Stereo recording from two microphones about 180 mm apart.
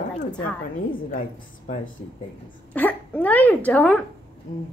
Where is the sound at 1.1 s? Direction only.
50° left (ahead or behind).